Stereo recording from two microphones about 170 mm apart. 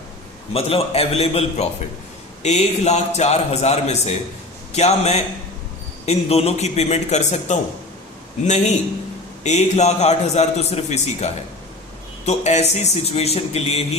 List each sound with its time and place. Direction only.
0.5 s a man's voice: 35° left (ahead or behind)